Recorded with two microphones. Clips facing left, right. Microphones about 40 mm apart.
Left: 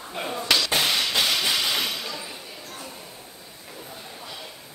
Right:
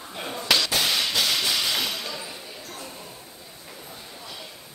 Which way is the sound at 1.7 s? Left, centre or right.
Centre.